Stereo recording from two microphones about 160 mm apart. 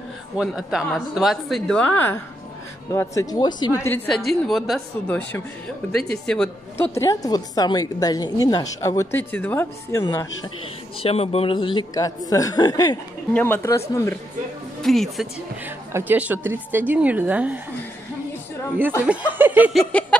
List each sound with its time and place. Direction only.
0.4 s a woman's voice: 5° right (ahead or behind); by 3.8 s 25° left (ahead or behind)
3.8 s speech: 10° left (ahead or behind)
4.3 s speech: centre (ahead or behind)
5.0 s speech: 10° left (ahead or behind)
6.8 s a woman's voice: 15° left (ahead or behind)
11.0 s a woman's voice: 40° left (ahead or behind)
13.3 s speech: 10° left (ahead or behind)
14.8 s speech: centre (ahead or behind)
15.9 s a woman's voice: 10° right (ahead or behind)
18.8 s a woman's voice: 10° right (ahead or behind)
19.7 s speech: 5° left (ahead or behind)